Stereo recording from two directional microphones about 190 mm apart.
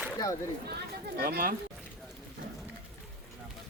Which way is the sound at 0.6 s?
55° right (ahead or behind).